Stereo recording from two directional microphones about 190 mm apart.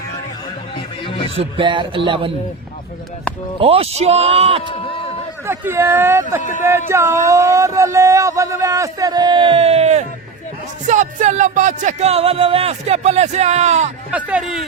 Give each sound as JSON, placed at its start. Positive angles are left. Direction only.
{"t": 1.0, "sound": "music", "side_deg": 25}
{"t": 1.4, "sound": "music", "side_deg": -25}
{"t": 3.6, "sound": "music", "side_deg": -30}
{"t": 4.6, "sound": "speech", "side_deg": 30}
{"t": 5.5, "sound": "a man's voice", "side_deg": -15}
{"t": 6.4, "sound": "speech", "side_deg": 40}
{"t": 6.7, "sound": "a man's voice", "side_deg": -15}
{"t": 10.8, "sound": "music", "side_deg": -40}
{"t": 14.1, "sound": "a man's voice", "side_deg": -5}